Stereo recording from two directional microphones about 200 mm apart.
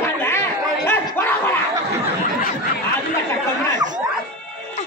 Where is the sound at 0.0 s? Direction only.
10° left (ahead or behind).